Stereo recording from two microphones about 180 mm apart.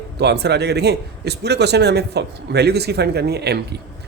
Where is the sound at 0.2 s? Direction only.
65° right (ahead or behind).